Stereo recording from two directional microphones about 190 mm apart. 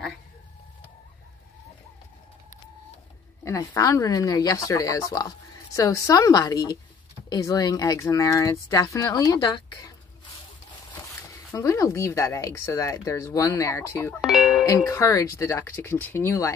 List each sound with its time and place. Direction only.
3.4 s a woman's voice: 15° left (ahead or behind)
11.5 s speech: 15° left (ahead or behind)
14.2 s speech: centre (ahead or behind)
14.8 s speech: 15° left (ahead or behind)